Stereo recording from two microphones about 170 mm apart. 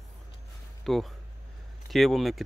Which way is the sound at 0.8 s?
Centre (ahead or behind).